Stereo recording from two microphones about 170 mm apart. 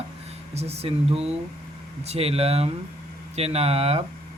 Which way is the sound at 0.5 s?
40° right (ahead or behind).